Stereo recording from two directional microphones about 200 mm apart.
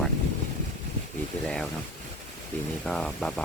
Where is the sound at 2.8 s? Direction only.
5° left (ahead or behind).